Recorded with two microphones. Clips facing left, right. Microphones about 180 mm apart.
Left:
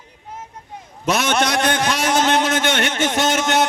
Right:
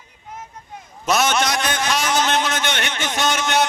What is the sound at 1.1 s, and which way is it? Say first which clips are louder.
A man's voice: even; 60° left (ahead or behind).